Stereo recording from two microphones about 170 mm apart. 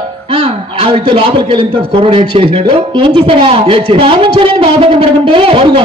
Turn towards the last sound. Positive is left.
turn(degrees=-30)  # may be behind; listen again after turning